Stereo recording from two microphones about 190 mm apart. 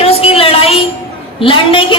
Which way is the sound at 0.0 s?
30° left (ahead or behind).